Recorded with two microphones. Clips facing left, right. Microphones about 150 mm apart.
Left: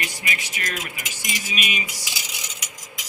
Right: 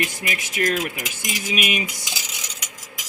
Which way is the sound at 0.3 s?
50° right (ahead or behind).